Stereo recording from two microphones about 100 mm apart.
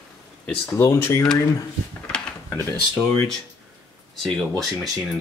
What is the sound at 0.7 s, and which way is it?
Speech, 25° left (ahead or behind).